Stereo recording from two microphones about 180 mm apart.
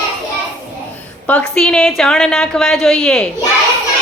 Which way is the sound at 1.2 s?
5° left (ahead or behind).